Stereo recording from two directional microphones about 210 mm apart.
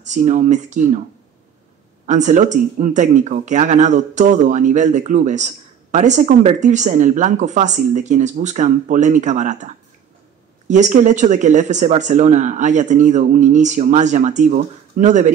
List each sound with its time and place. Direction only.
0.0 s speech: 35° right (ahead or behind)
2.0 s speech: 35° right (ahead or behind)
10.7 s speech: 35° right (ahead or behind)